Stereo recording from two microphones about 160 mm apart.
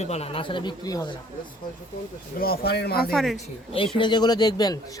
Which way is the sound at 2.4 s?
75° left (ahead or behind).